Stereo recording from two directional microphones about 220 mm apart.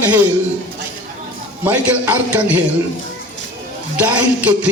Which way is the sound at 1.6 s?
5° right (ahead or behind).